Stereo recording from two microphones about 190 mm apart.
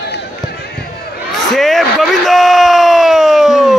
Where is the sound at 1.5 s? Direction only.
Centre (ahead or behind).